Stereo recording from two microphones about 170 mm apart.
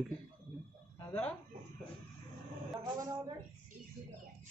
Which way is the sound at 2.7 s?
20° right (ahead or behind).